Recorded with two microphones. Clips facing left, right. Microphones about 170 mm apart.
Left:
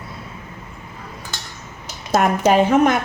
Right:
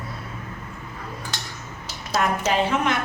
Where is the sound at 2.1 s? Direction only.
50° left (ahead or behind).